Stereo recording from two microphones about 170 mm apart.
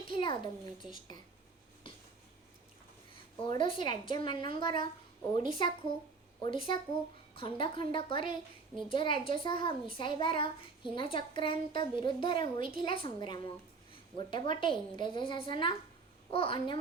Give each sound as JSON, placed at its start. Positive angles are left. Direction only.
{"t": 0.2, "sound": "a child's voice", "side_deg": 30}
{"t": 3.4, "sound": "a woman's voice", "side_deg": 30}